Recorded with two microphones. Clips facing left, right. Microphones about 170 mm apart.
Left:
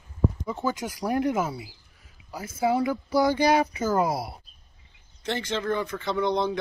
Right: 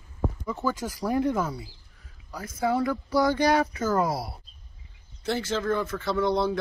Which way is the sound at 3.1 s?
Centre (ahead or behind).